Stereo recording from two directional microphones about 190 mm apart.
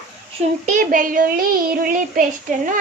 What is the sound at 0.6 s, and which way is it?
Child singing, 45° right (ahead or behind).